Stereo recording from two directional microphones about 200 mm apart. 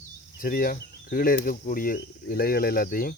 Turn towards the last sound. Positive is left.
turn(degrees=45)  # may be behind; listen again after turning